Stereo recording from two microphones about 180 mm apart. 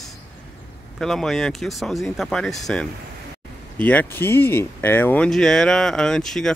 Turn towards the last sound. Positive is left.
turn(degrees=0)  # may be behind; listen again after turning